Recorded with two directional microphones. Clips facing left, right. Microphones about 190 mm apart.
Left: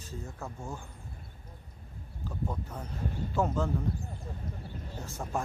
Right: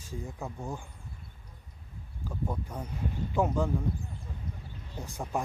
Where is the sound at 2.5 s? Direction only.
10° right (ahead or behind).